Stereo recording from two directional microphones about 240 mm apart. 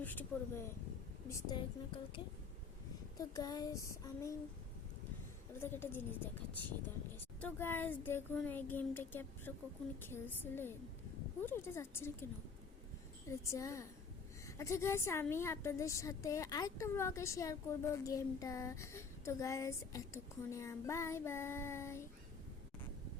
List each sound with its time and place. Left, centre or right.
0.0 s a woman's voice: centre
5.5 s a woman's voice: centre
7.4 s a woman's voice: centre
13.2 s a woman's voice: centre